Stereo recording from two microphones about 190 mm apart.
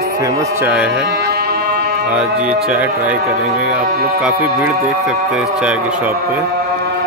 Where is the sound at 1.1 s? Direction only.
60° right (ahead or behind).